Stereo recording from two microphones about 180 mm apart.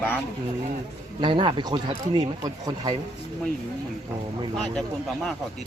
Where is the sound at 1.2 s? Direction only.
25° right (ahead or behind).